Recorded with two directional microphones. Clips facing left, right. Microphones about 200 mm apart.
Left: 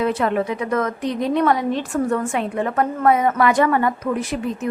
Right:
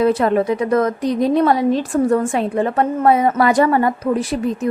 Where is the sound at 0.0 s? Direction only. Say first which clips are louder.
Right 5 dB; 35° right (ahead or behind).